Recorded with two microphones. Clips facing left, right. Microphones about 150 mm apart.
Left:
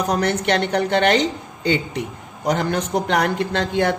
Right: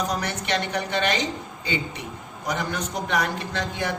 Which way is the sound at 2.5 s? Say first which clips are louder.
Left 8 dB; 60° left (ahead or behind).